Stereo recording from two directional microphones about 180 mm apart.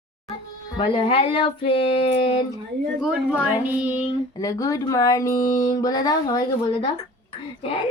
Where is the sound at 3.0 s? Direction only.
5° right (ahead or behind).